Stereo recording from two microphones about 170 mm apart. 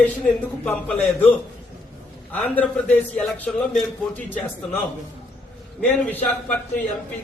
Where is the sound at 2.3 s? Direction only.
10° left (ahead or behind).